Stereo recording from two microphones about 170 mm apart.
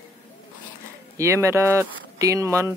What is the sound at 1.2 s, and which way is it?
Speech, 15° right (ahead or behind).